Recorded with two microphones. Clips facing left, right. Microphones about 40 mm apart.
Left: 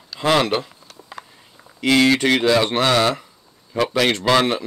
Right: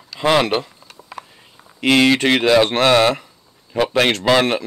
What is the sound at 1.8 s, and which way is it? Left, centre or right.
Speech, right.